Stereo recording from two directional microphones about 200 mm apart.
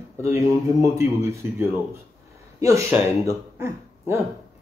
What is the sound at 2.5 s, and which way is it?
Speech, 15° right (ahead or behind).